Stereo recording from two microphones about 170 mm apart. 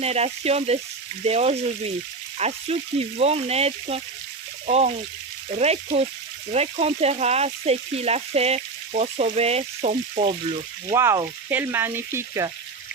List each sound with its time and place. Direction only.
0.0 s frying: 40° right (ahead or behind)
4.6 s speech: 40° right (ahead or behind)
5.5 s frying: 40° right (ahead or behind)
10.9 s frying: 15° right (ahead or behind)